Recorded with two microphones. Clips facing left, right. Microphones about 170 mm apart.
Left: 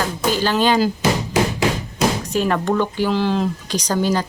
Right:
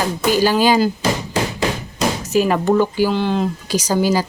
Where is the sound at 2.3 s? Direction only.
10° right (ahead or behind).